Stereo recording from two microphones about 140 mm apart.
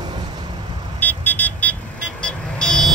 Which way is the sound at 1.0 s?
10° left (ahead or behind).